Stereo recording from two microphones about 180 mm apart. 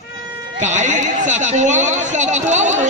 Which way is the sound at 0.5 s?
40° right (ahead or behind).